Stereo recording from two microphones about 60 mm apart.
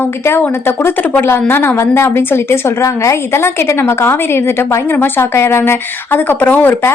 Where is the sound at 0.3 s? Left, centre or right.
Left.